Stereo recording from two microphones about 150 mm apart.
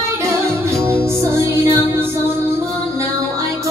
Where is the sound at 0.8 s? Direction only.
15° right (ahead or behind).